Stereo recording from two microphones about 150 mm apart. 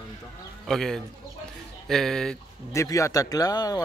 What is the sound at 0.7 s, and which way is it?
Speech, 5° left (ahead or behind).